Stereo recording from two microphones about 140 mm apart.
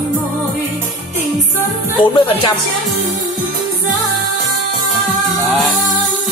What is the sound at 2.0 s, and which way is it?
Music, 35° left (ahead or behind).